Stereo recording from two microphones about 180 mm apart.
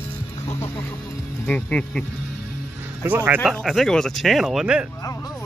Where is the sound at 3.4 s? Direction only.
Centre (ahead or behind).